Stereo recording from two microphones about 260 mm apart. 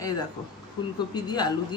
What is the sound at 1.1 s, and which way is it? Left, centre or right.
Speech, centre.